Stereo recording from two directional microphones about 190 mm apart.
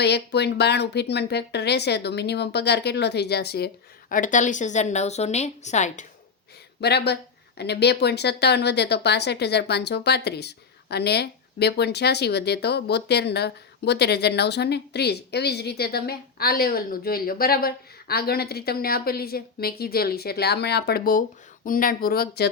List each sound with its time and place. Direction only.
0.0 s speech: 60° left (ahead or behind)
4.1 s a woman's voice: 45° left (ahead or behind)
6.8 s speech: 60° left (ahead or behind)